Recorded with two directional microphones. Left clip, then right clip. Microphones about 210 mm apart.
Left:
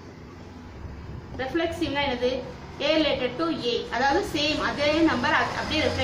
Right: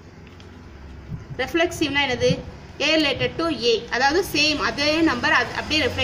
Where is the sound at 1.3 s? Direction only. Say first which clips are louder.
Right 5 dB; 50° right (ahead or behind).